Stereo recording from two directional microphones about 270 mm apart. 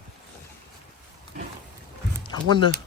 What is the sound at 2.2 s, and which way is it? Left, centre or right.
Speech, centre.